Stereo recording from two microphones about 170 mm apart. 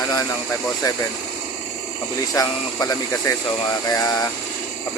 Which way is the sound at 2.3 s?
20° left (ahead or behind).